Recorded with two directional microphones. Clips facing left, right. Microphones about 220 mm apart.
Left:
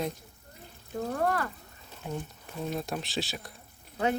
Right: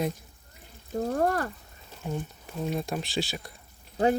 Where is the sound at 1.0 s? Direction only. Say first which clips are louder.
Right 3 dB; 40° right (ahead or behind).